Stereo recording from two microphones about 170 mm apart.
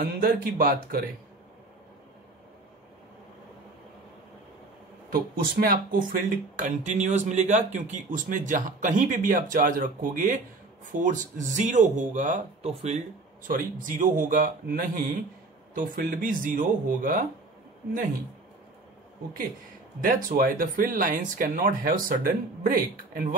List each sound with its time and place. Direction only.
0.0 s speech: 55° right (ahead or behind)
5.1 s speech: 60° right (ahead or behind); by 13.0 s 45° right (ahead or behind)
13.5 s speech: 55° right (ahead or behind)
20.0 s speech: 55° right (ahead or behind)